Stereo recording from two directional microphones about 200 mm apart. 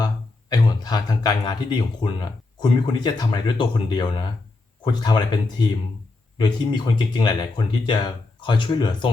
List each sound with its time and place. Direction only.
0.5 s speech: 20° left (ahead or behind)